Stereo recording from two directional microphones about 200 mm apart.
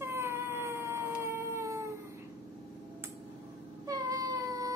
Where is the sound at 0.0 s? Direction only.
10° right (ahead or behind).